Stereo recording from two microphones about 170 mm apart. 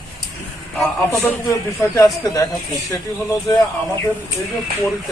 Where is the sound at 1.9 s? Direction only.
20° left (ahead or behind).